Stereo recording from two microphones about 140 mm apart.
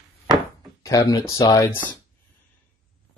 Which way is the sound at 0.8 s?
25° left (ahead or behind).